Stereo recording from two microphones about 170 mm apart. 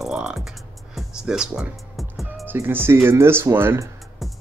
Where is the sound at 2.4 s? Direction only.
10° right (ahead or behind).